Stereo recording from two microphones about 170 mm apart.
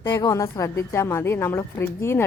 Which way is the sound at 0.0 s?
25° left (ahead or behind).